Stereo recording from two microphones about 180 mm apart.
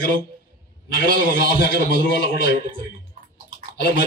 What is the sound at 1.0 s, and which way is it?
A man's voice, 50° right (ahead or behind).